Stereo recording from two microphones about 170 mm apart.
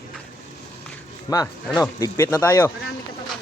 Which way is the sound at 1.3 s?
25° left (ahead or behind).